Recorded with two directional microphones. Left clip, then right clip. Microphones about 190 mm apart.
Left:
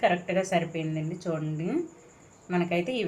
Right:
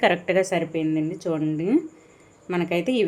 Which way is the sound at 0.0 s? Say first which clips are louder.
Right 5 dB; 60° right (ahead or behind).